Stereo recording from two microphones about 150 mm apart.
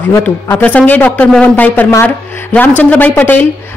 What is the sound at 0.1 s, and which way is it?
Speech, 10° left (ahead or behind).